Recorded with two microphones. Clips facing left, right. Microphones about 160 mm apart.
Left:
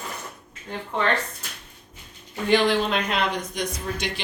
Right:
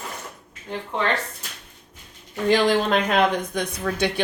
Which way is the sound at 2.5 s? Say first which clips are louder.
Right 2 dB; 45° right (ahead or behind).